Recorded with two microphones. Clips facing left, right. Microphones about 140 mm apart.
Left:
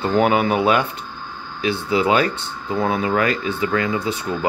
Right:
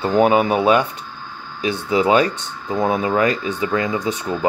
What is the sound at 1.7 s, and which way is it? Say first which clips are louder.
Speech: right 2 dB; 20° right (ahead or behind).